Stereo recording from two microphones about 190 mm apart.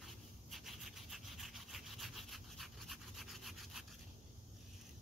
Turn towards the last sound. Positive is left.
turn(degrees=0)  # may be behind; listen again after turning